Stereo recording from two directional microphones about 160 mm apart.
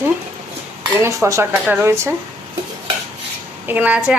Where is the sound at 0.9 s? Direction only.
20° right (ahead or behind).